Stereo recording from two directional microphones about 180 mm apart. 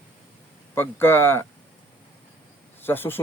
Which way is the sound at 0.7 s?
10° left (ahead or behind).